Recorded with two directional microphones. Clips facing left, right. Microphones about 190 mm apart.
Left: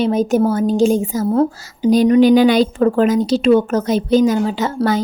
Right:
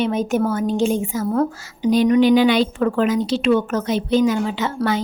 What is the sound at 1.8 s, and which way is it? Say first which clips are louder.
A woman's voice: left 4 dB; 40° left (ahead or behind).